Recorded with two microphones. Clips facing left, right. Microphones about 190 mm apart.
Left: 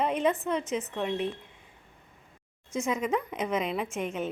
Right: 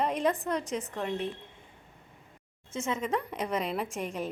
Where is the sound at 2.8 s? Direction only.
10° left (ahead or behind).